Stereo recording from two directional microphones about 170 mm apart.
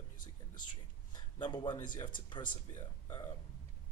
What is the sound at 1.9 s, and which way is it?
Speech, 25° left (ahead or behind).